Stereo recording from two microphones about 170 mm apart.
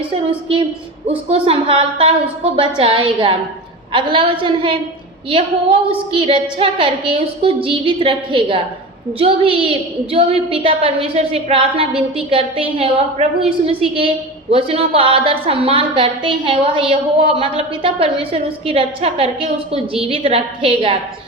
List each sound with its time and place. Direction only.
0.1 s a woman's voice: 30° right (ahead or behind)